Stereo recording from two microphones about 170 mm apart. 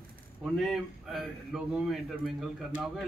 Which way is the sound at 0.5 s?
Centre (ahead or behind).